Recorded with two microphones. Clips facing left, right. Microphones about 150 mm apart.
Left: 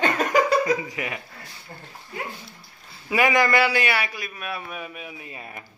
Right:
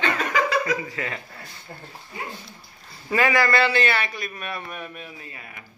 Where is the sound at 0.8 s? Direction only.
15° left (ahead or behind).